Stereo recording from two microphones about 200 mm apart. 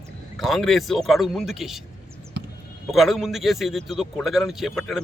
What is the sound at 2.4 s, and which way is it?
Basketball bounce, 60° right (ahead or behind).